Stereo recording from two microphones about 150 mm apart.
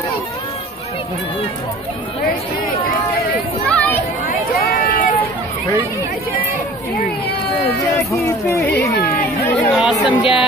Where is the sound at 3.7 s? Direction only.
10° left (ahead or behind).